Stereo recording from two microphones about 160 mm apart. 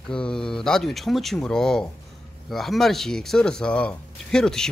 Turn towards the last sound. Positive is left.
turn(degrees=5)  # may be behind; listen again after turning